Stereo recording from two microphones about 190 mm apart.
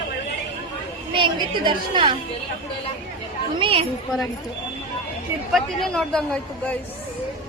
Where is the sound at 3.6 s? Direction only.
30° right (ahead or behind).